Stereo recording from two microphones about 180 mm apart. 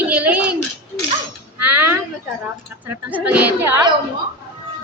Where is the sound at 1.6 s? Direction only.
10° right (ahead or behind).